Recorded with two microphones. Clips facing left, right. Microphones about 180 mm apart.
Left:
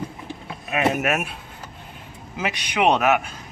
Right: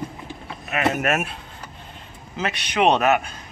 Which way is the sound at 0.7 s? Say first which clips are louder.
Left 1 dB; 15° left (ahead or behind).